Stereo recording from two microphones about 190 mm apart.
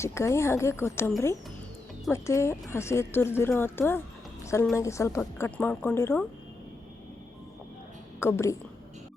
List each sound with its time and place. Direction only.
0.0 s a woman's voice: 15° left (ahead or behind)
8.2 s a woman's voice: 15° left (ahead or behind)